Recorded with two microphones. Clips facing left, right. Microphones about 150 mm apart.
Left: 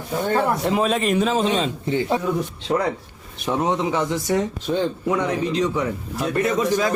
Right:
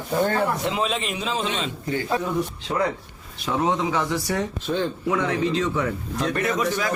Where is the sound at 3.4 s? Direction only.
20° left (ahead or behind).